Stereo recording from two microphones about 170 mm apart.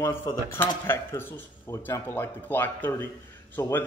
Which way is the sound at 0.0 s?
15° left (ahead or behind).